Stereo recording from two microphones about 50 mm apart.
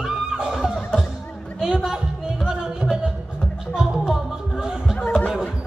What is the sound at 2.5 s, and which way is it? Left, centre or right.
Music, centre.